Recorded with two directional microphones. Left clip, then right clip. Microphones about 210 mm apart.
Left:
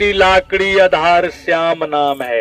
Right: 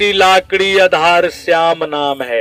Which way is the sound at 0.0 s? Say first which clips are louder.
Right 1 dB; 55° right (ahead or behind).